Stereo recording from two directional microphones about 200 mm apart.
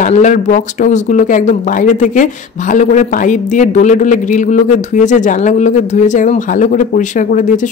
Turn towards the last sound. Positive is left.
turn(degrees=40)  # may be behind; listen again after turning